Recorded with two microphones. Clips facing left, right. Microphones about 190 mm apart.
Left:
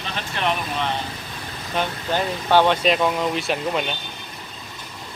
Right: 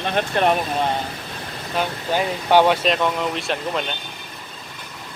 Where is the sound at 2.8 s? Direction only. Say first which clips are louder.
Left 1 dB; 5° left (ahead or behind).